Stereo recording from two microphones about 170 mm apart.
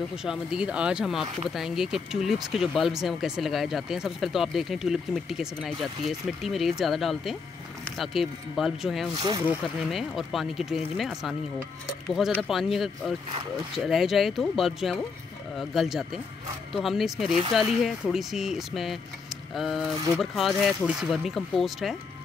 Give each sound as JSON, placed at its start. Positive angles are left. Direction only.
{"t": 0.1, "sound": "speech", "side_deg": -5}
{"t": 9.1, "sound": "speech", "side_deg": -25}
{"t": 9.8, "sound": "speech", "side_deg": 0}
{"t": 12.4, "sound": "speech", "side_deg": 0}